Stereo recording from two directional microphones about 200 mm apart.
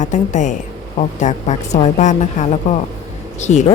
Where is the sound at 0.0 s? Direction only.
40° left (ahead or behind).